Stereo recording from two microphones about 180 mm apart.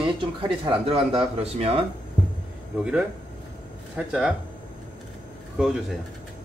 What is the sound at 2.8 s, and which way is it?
Speech, 5° right (ahead or behind).